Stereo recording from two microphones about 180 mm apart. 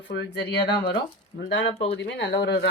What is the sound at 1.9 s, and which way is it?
Speech, 70° left (ahead or behind).